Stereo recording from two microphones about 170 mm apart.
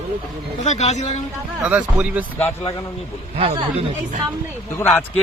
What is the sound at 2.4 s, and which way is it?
Speech, 15° left (ahead or behind).